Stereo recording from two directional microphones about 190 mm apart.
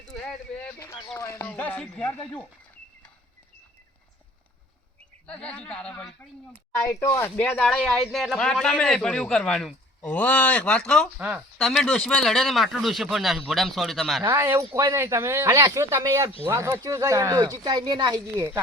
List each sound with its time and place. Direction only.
0.6 s speech: 15° left (ahead or behind)
5.2 s speech: 5° left (ahead or behind)
14.3 s speech: 15° right (ahead or behind)